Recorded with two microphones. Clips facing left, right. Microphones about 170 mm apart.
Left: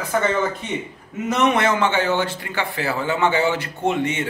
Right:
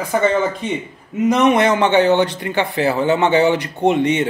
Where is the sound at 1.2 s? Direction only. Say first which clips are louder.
Right 5 dB; 15° right (ahead or behind).